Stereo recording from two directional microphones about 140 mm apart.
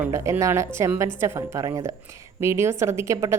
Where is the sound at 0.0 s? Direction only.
20° right (ahead or behind).